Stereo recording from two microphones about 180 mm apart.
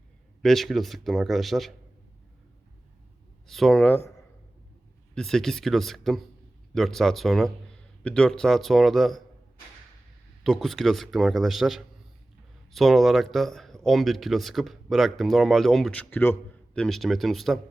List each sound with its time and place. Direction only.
0.4 s speech: centre (ahead or behind)
3.4 s speech: centre (ahead or behind)
5.1 s speech: centre (ahead or behind)
10.4 s speech: centre (ahead or behind)